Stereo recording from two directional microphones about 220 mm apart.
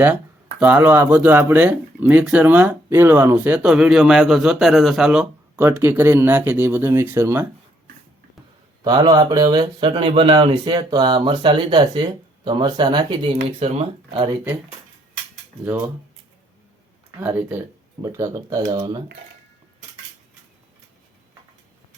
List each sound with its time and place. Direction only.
0.6 s speech: 10° right (ahead or behind)
8.8 s speech: 20° right (ahead or behind)
17.2 s speech: 10° right (ahead or behind)